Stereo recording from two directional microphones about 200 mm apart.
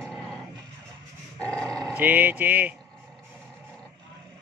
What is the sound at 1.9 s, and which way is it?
Speech, 10° right (ahead or behind).